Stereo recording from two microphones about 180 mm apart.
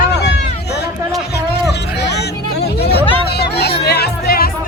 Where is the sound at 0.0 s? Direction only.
70° left (ahead or behind).